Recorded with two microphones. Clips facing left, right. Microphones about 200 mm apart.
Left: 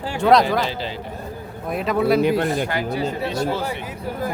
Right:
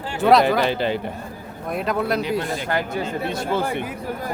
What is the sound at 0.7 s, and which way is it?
Speech, 60° right (ahead or behind).